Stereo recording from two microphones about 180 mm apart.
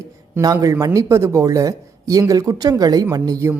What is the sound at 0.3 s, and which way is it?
Speech, 20° right (ahead or behind).